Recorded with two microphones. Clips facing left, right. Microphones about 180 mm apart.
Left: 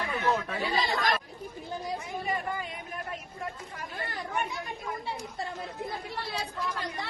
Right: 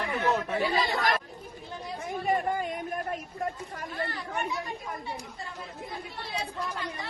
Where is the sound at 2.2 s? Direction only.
45° right (ahead or behind).